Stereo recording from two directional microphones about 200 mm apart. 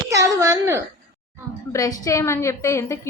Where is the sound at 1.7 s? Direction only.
15° left (ahead or behind).